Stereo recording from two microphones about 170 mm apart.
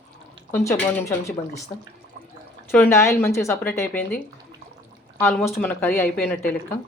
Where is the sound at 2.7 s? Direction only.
15° left (ahead or behind).